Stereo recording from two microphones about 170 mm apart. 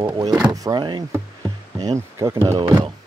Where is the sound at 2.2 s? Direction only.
15° right (ahead or behind).